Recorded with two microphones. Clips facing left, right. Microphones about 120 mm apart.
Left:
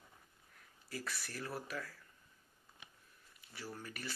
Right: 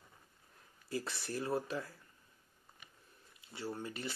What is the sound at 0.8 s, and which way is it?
Speech, 25° right (ahead or behind).